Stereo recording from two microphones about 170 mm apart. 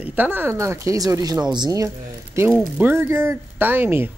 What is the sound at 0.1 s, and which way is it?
Speech, 10° right (ahead or behind).